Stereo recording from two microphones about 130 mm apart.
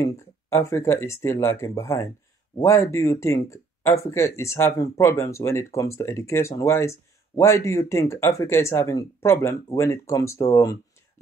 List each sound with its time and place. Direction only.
0.0 s speech: 20° left (ahead or behind)